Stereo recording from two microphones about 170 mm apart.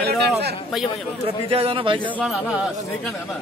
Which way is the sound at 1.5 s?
35° right (ahead or behind).